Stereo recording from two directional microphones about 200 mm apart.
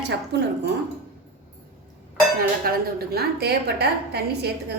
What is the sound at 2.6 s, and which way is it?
A woman's voice, 50° right (ahead or behind).